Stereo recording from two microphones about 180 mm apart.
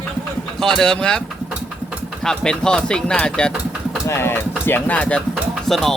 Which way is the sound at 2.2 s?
5° left (ahead or behind).